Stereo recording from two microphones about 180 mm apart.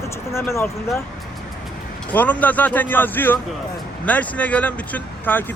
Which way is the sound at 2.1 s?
10° left (ahead or behind).